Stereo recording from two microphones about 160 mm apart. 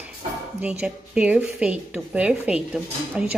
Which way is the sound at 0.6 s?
5° right (ahead or behind).